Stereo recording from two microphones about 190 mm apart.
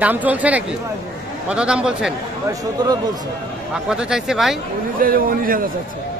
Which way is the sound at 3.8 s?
5° right (ahead or behind).